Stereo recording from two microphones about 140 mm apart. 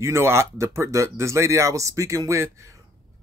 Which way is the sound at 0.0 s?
20° right (ahead or behind).